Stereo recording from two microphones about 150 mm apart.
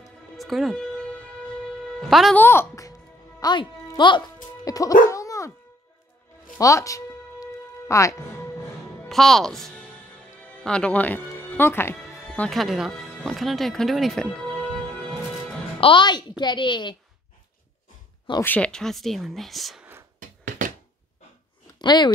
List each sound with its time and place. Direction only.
0.4 s music: centre (ahead or behind)
1.9 s a woman's voice: centre (ahead or behind)
2.3 s speech: 15° left (ahead or behind); by 4.2 s 30° left (ahead or behind)
4.6 s music: 25° left (ahead or behind)
5.1 s dog: 20° left (ahead or behind)
6.6 s music: 20° left (ahead or behind)
7.9 s speech: 20° left (ahead or behind)
9.1 s speech: centre (ahead or behind)
10.5 s music: 5° left (ahead or behind)
12.4 s music: centre (ahead or behind)
15.8 s a woman's voice: 30° left (ahead or behind)
18.4 s speech: 10° left (ahead or behind)
20.2 s a sound: 60° right (ahead or behind)
21.7 s speech: 30° left (ahead or behind)